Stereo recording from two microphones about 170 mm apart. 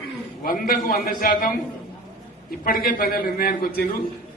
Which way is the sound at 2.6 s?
60° left (ahead or behind).